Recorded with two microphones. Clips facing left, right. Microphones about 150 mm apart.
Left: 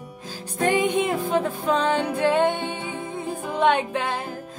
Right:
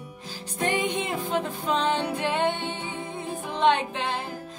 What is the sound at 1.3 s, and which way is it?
Music, 10° left (ahead or behind).